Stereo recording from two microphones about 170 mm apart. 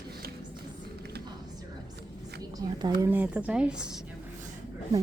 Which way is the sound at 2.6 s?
25° right (ahead or behind).